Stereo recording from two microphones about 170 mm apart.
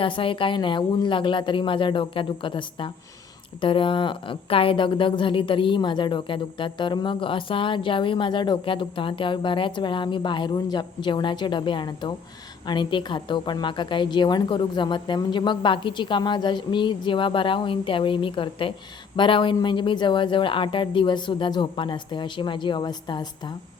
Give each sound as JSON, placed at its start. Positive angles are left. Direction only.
{"t": 0.0, "sound": "a woman's voice", "side_deg": 30}